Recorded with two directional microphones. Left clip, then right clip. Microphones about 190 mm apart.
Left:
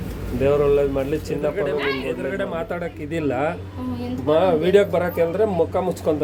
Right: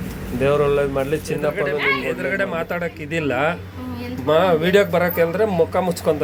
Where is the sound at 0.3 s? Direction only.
10° right (ahead or behind).